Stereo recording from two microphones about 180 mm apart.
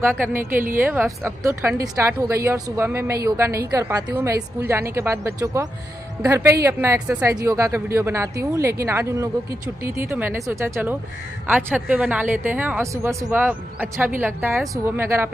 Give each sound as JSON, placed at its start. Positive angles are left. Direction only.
{"t": 0.8, "sound": "a woman's voice", "side_deg": -15}